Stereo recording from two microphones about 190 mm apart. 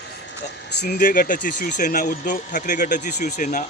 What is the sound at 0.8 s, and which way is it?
A man's voice, 50° left (ahead or behind).